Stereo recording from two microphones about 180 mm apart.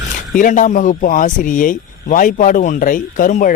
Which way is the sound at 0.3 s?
45° left (ahead or behind).